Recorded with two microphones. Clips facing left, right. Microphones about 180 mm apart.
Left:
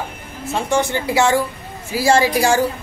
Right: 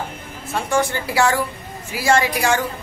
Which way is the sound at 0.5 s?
20° left (ahead or behind).